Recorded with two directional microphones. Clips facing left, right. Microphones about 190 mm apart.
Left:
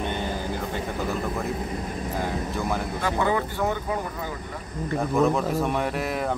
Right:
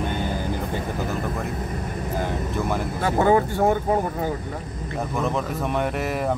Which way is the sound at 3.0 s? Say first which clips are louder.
Right 7 dB; 40° right (ahead or behind).